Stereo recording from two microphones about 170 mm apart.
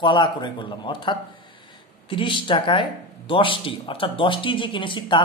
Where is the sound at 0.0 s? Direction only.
30° left (ahead or behind).